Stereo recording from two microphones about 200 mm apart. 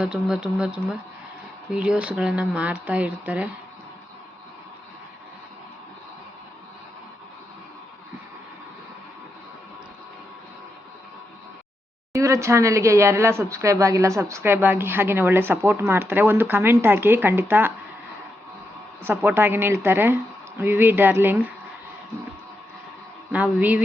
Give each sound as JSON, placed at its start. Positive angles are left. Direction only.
{"t": 0.0, "sound": "speech", "side_deg": -5}
{"t": 12.1, "sound": "speech", "side_deg": -15}
{"t": 19.0, "sound": "speech", "side_deg": -10}
{"t": 23.3, "sound": "speech", "side_deg": -10}